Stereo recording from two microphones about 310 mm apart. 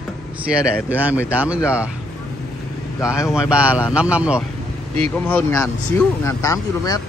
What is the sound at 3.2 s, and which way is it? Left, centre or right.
Speech, centre.